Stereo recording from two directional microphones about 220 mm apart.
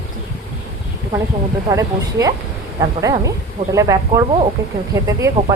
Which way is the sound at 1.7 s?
15° right (ahead or behind).